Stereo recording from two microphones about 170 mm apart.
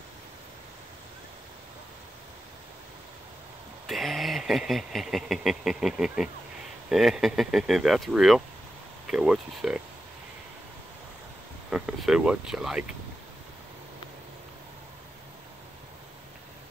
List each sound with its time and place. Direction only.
3.8 s speech: centre (ahead or behind)
11.7 s speech: 5° right (ahead or behind)